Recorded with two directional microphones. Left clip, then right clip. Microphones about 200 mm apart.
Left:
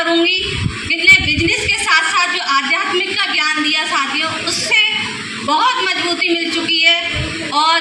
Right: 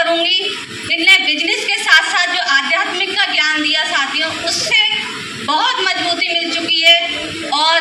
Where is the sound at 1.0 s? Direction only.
15° right (ahead or behind).